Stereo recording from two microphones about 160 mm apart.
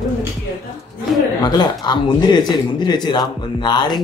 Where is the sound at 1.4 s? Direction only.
25° left (ahead or behind).